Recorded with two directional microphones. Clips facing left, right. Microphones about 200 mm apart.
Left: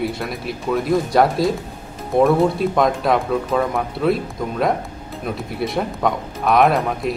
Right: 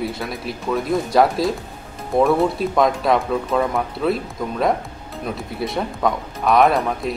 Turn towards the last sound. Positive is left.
turn(degrees=0)  # may be behind; listen again after turning